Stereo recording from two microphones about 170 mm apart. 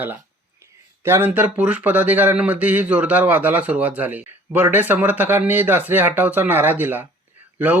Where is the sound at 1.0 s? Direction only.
15° right (ahead or behind).